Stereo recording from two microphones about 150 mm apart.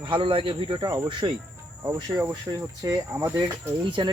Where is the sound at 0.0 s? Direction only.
35° right (ahead or behind).